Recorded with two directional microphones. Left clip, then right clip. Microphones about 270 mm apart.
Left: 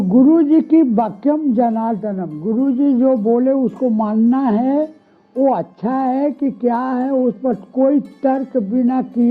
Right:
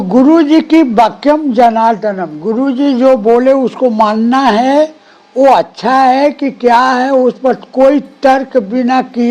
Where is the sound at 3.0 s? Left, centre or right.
Right.